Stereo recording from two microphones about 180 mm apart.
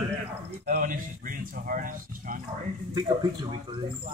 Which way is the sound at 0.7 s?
50° right (ahead or behind).